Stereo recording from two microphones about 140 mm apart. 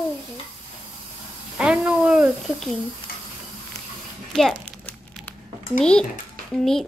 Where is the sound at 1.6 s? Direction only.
10° right (ahead or behind).